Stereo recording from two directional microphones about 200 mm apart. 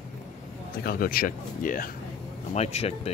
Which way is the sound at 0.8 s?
45° left (ahead or behind).